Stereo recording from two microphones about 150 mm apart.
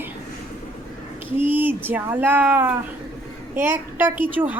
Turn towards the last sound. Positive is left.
turn(degrees=-10)  # may be behind; listen again after turning